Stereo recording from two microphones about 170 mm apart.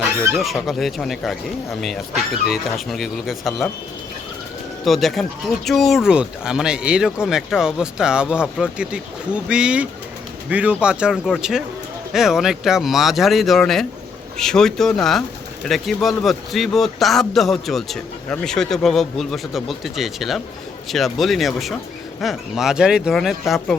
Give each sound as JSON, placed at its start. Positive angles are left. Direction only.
{"t": 0.3, "sound": "a man's voice", "side_deg": 0}
{"t": 4.9, "sound": "a man's voice", "side_deg": 0}